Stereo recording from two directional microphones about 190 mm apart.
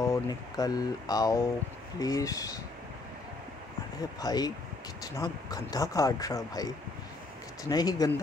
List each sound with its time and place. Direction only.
0.0 s speech: 20° left (ahead or behind)
4.2 s speech: 20° left (ahead or behind)